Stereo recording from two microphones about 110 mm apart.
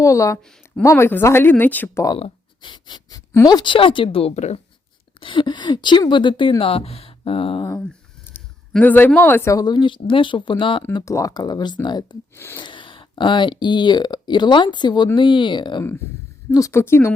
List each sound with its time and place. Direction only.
0.0 s speech: 30° left (ahead or behind)
2.6 s a sound: 45° left (ahead or behind)
3.1 s speech: 35° left (ahead or behind); by 4.6 s 75° left (ahead or behind)
5.2 s speech: 50° left (ahead or behind)
6.6 s speech: 60° left (ahead or behind)
8.8 s speech: 15° left (ahead or behind); by 10.8 s 50° left (ahead or behind)
11.0 s speech: 30° left (ahead or behind)
12.3 s speech: 20° left (ahead or behind)
12.5 s speech: 45° left (ahead or behind)
15.8 s speech: 20° left (ahead or behind)